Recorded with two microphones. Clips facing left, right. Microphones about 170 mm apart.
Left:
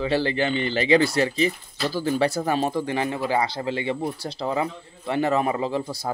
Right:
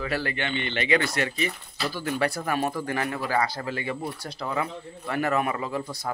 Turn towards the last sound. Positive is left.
turn(degrees=30)  # may be behind; listen again after turning